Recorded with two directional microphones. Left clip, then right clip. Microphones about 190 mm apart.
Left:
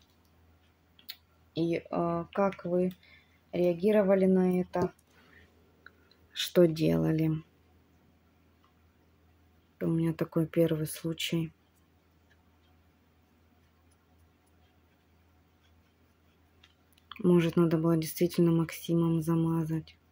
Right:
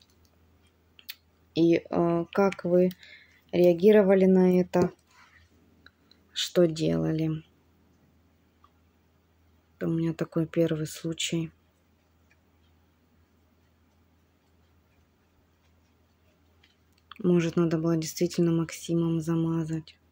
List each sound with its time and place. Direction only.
1.0 s speech: 35° right (ahead or behind)
5.9 s a sound: 5° right (ahead or behind)
6.3 s speech: 5° left (ahead or behind)
9.8 s speech: centre (ahead or behind)
17.1 s speech: centre (ahead or behind)